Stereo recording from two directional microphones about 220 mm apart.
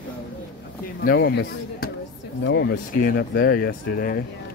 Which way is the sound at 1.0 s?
45° left (ahead or behind).